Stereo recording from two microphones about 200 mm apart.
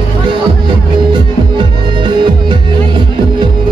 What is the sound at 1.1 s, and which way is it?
Music, 25° right (ahead or behind).